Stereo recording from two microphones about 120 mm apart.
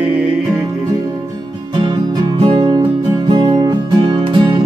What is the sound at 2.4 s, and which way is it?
Music, 45° right (ahead or behind).